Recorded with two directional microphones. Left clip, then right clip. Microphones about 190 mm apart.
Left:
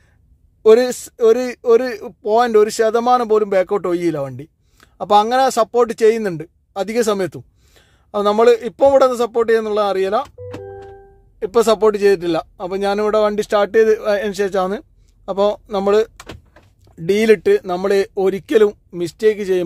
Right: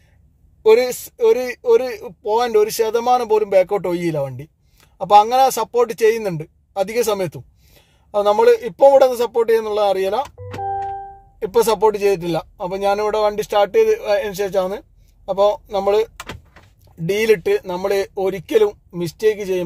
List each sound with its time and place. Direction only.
0.6 s speech: 20° left (ahead or behind)
11.3 s speech: 10° left (ahead or behind)